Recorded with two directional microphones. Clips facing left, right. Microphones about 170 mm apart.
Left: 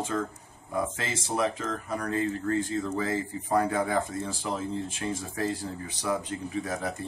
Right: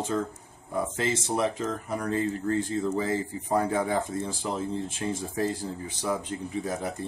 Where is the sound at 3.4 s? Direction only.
15° right (ahead or behind).